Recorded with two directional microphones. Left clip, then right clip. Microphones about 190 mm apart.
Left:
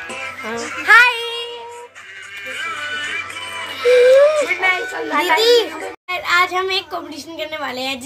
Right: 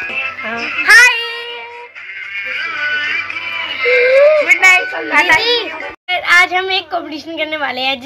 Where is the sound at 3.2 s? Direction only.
45° left (ahead or behind).